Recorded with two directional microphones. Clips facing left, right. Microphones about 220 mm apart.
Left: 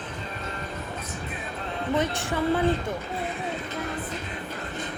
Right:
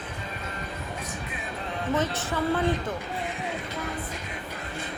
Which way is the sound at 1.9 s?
15° left (ahead or behind).